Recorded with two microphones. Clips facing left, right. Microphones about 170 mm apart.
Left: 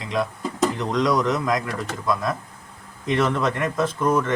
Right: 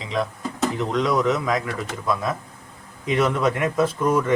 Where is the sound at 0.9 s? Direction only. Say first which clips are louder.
Right 2 dB; 5° right (ahead or behind).